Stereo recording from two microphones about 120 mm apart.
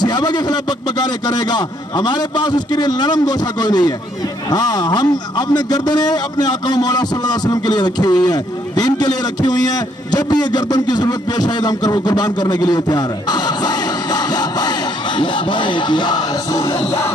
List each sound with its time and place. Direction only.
0.0 s a man's voice: 35° left (ahead or behind)